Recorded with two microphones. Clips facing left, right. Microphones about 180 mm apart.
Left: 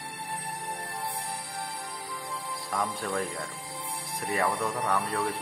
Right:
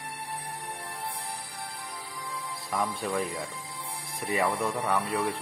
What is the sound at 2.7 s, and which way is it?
Speech, centre (ahead or behind).